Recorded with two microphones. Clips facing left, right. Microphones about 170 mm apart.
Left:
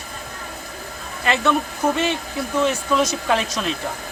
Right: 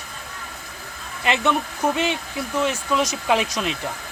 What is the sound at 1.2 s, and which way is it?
Speech, 15° right (ahead or behind).